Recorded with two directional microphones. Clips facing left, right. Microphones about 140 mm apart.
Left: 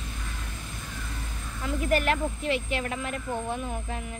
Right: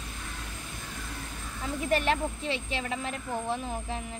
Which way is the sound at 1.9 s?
30° right (ahead or behind).